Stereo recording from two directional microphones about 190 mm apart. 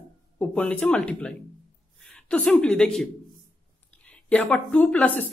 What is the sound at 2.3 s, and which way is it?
Speech, 5° left (ahead or behind).